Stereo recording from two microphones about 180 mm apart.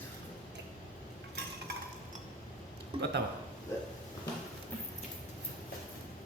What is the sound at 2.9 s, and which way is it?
Speech, 30° right (ahead or behind).